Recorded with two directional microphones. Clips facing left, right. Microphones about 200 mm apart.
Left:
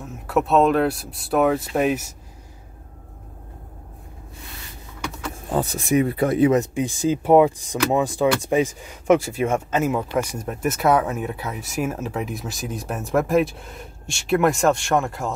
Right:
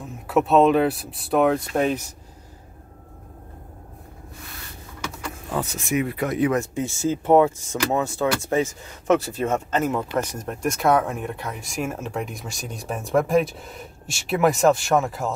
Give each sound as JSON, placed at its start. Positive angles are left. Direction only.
{"t": 0.3, "sound": "speech", "side_deg": 0}
{"t": 5.5, "sound": "speech", "side_deg": 35}